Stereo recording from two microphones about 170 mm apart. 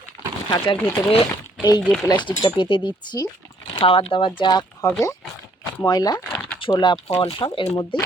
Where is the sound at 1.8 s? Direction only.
5° left (ahead or behind).